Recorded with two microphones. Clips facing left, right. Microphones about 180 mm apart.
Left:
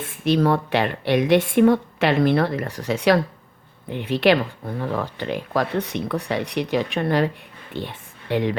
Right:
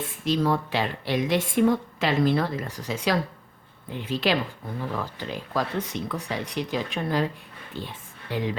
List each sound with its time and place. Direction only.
0.0 s speech: 65° left (ahead or behind)